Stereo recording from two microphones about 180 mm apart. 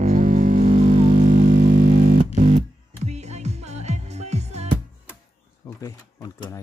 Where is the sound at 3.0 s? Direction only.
40° right (ahead or behind).